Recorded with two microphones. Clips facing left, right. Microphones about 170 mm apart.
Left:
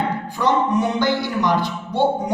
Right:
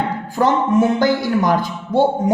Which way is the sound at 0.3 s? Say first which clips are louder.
Right 4 dB; 45° right (ahead or behind).